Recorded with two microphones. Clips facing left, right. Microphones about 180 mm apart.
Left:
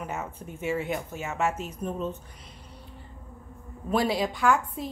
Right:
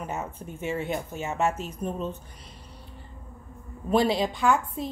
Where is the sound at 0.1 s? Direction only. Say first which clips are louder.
Right 1 dB; 30° right (ahead or behind).